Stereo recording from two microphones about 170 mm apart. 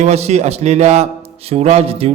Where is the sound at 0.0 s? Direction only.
40° right (ahead or behind).